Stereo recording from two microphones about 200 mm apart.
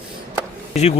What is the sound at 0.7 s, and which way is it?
Speech, 35° left (ahead or behind).